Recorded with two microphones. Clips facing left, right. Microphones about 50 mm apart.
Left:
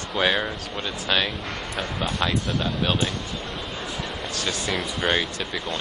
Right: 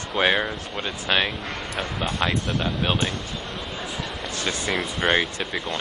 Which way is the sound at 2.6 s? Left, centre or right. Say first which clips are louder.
Right 1 dB; centre.